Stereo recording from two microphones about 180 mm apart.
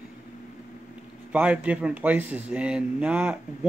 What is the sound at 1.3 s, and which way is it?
A man's voice, 5° right (ahead or behind).